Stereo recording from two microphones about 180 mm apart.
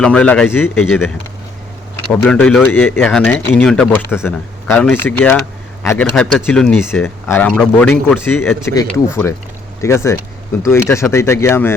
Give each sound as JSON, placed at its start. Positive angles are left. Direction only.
{"t": 0.0, "sound": "speech", "side_deg": 5}
{"t": 2.2, "sound": "speech", "side_deg": 5}